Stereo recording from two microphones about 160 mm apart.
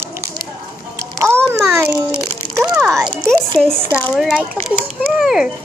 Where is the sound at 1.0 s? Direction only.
20° right (ahead or behind).